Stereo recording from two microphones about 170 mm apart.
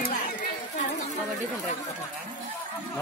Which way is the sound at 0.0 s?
55° left (ahead or behind).